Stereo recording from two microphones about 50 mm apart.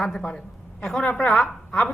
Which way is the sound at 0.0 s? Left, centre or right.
Centre.